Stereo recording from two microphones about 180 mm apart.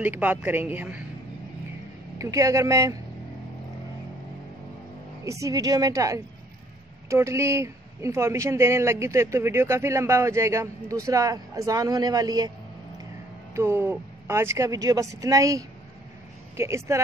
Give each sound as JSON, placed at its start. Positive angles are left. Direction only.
{"t": 0.0, "sound": "speech", "side_deg": -10}
{"t": 2.1, "sound": "speech", "side_deg": -15}
{"t": 5.2, "sound": "a woman's voice", "side_deg": -15}
{"t": 13.5, "sound": "speech", "side_deg": -15}